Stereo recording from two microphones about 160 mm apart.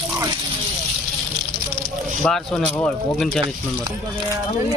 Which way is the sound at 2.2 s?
5° left (ahead or behind).